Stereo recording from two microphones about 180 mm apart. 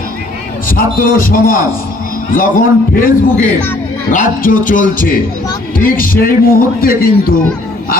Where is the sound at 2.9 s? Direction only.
50° left (ahead or behind).